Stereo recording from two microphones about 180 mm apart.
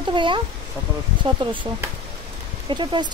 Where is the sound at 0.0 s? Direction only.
25° right (ahead or behind).